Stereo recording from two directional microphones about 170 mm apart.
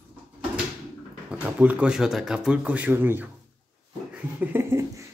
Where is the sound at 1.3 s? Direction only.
10° right (ahead or behind).